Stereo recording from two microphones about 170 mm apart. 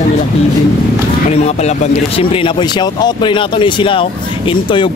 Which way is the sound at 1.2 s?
40° left (ahead or behind).